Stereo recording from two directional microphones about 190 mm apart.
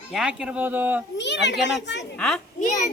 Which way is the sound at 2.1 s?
5° left (ahead or behind).